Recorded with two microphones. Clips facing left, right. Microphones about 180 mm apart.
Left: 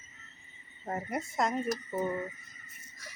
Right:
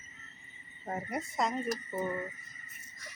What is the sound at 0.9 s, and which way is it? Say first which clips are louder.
Speech: left 2 dB; centre (ahead or behind).